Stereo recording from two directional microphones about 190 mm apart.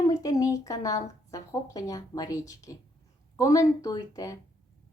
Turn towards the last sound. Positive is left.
turn(degrees=15)  # may be behind; listen again after turning